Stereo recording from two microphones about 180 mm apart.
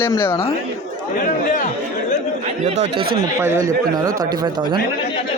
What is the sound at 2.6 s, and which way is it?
Speech, 40° right (ahead or behind).